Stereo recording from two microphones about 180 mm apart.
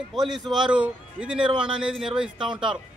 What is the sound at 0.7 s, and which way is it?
Speech, 5° right (ahead or behind).